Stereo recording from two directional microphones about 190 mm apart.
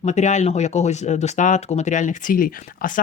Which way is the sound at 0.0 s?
40° left (ahead or behind).